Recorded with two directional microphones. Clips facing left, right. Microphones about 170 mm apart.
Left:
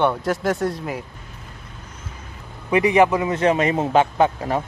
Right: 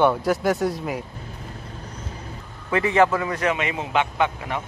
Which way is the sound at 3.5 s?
40° left (ahead or behind).